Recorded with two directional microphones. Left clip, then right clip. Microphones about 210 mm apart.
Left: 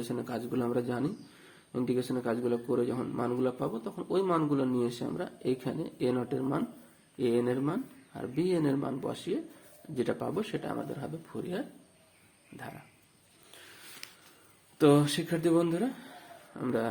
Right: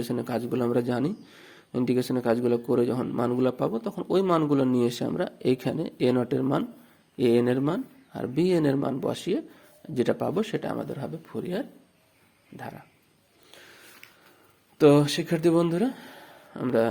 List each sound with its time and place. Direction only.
0.0 s speech: 35° right (ahead or behind)
13.5 s a sound: 25° right (ahead or behind)
14.8 s speech: 30° right (ahead or behind)